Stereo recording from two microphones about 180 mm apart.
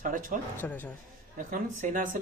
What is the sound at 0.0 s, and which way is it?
Speech, 50° right (ahead or behind).